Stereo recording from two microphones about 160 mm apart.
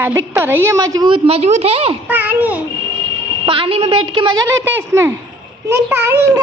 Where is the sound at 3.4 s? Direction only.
35° right (ahead or behind); by 6.2 s 15° right (ahead or behind).